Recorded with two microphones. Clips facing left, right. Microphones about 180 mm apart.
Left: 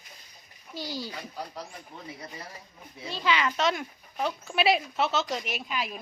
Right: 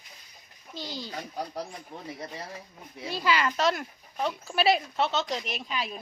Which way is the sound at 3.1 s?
5° right (ahead or behind).